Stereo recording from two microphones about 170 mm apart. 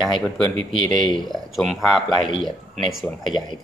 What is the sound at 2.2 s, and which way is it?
Speech, 30° left (ahead or behind).